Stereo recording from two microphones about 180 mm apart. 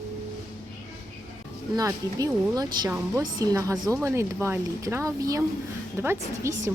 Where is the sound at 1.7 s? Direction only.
20° right (ahead or behind).